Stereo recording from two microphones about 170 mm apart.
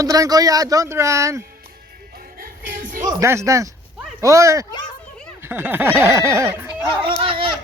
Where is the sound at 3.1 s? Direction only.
20° right (ahead or behind).